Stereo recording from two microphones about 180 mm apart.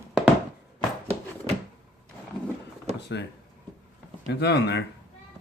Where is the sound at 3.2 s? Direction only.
70° left (ahead or behind).